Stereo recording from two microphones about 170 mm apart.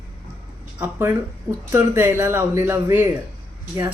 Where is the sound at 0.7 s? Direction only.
10° right (ahead or behind).